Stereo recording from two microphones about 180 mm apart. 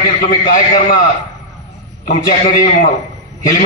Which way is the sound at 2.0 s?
45° left (ahead or behind).